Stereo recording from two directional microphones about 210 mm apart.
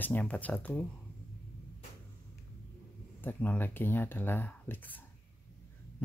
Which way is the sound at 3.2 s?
10° left (ahead or behind).